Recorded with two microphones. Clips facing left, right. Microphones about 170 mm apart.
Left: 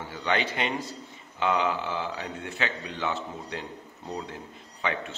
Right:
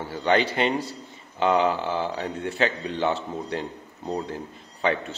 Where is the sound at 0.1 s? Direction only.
35° right (ahead or behind).